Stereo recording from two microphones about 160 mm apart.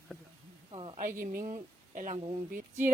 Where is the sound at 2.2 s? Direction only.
35° right (ahead or behind).